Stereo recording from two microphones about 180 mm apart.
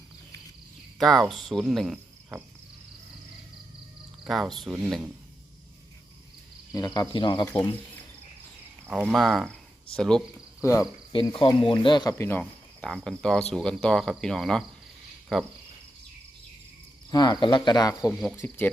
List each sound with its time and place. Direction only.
0.9 s speech: centre (ahead or behind)
4.2 s speech: centre (ahead or behind)
6.7 s speech: 20° left (ahead or behind)
8.9 s speech: centre (ahead or behind)
9.5 s a sound: 5° left (ahead or behind)
10.6 s cricket: 15° left (ahead or behind)
11.1 s speech: 30° left (ahead or behind)
12.1 s speech: 10° left (ahead or behind)
17.1 s speech: 25° left (ahead or behind)